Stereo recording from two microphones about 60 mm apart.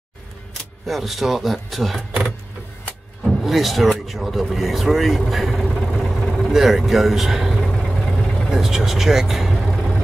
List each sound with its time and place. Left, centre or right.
0.8 s speech: centre
3.3 s speech: centre
5.9 s vehicle: centre
7.6 s vehicle: centre
8.5 s speech: centre